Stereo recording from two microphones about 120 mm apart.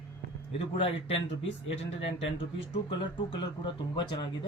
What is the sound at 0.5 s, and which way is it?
Speech, 50° left (ahead or behind).